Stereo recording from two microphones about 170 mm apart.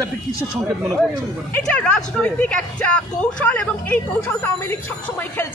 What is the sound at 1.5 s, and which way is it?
A man's voice, 5° left (ahead or behind).